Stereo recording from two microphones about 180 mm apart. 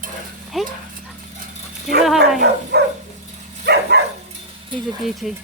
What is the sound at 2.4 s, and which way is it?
Dog, 65° right (ahead or behind).